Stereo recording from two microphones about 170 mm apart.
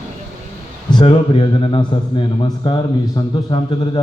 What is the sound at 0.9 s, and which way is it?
A man's voice, 30° left (ahead or behind).